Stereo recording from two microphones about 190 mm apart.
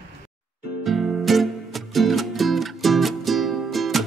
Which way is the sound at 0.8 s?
Centre (ahead or behind).